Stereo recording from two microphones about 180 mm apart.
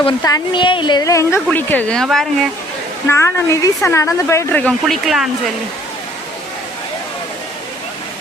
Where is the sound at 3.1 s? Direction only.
15° left (ahead or behind); by 5.3 s centre (ahead or behind).